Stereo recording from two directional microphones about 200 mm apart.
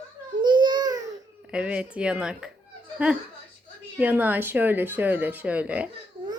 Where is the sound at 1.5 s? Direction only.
5° right (ahead or behind).